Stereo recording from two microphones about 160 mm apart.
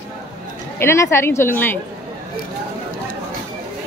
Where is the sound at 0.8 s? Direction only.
15° left (ahead or behind).